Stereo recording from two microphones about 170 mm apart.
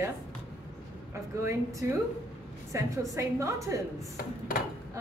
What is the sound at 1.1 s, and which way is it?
A woman's voice, 15° right (ahead or behind).